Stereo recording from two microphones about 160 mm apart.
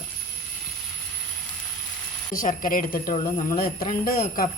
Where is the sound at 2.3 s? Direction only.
60° left (ahead or behind).